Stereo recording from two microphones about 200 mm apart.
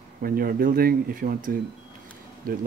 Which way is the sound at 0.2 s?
50° right (ahead or behind).